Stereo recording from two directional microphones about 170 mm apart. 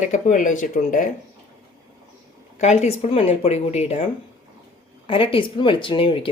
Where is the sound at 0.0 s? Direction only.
45° left (ahead or behind).